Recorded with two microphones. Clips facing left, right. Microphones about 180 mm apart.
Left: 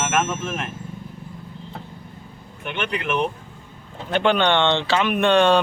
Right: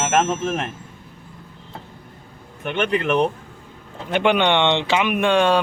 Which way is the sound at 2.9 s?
30° right (ahead or behind).